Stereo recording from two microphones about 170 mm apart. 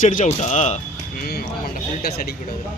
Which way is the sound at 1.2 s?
65° left (ahead or behind).